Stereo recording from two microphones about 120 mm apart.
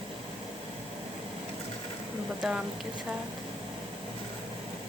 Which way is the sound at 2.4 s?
Centre (ahead or behind).